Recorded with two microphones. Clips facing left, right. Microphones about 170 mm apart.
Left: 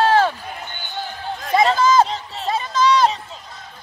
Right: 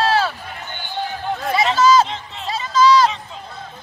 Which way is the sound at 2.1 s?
35° left (ahead or behind).